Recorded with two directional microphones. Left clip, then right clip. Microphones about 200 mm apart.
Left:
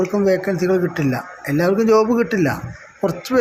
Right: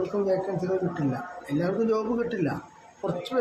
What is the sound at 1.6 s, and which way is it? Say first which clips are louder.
Speech: left 12 dB; 30° left (ahead or behind).